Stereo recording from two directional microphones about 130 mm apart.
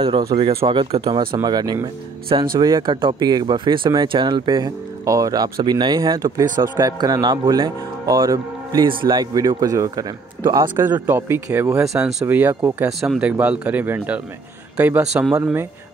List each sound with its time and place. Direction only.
0.0 s speech: 40° right (ahead or behind)
1.3 s speech: 35° right (ahead or behind)
10.8 s speech: 15° right (ahead or behind)